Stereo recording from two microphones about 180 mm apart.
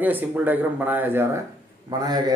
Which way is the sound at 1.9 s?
20° right (ahead or behind).